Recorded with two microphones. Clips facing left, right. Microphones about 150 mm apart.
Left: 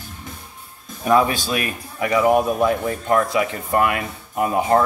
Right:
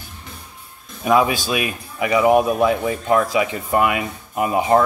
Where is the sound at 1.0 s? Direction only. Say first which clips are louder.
Even; 15° right (ahead or behind).